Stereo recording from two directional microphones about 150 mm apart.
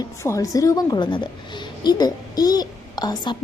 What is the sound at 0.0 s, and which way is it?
A woman's voice, 20° left (ahead or behind).